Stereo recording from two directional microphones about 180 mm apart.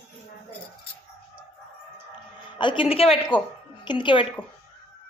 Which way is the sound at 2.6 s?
25° left (ahead or behind).